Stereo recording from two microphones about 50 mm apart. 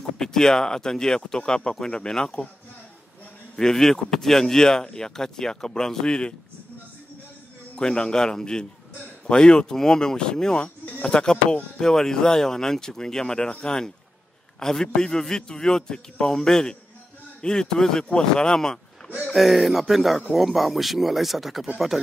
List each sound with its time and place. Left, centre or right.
0.2 s speech: centre
3.5 s speech: centre
7.7 s speech: centre
19.3 s speech: centre